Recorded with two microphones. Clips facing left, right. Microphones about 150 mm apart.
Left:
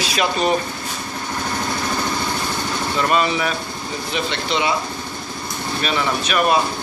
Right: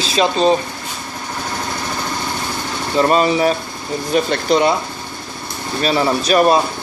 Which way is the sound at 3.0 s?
35° right (ahead or behind).